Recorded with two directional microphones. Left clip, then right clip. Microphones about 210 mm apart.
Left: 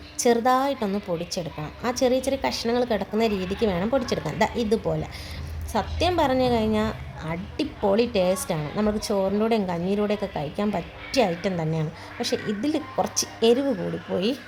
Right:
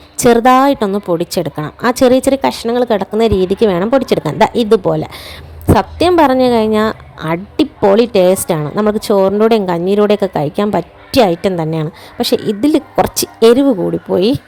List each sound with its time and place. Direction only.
0.2 s a woman's voice: 45° right (ahead or behind)